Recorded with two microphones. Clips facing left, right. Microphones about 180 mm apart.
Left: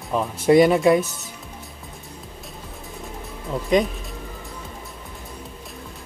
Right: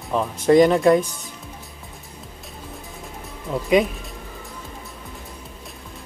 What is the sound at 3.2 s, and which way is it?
Music, centre (ahead or behind).